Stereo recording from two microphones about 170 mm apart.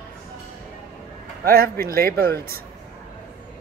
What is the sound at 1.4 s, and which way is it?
Speech, 60° right (ahead or behind).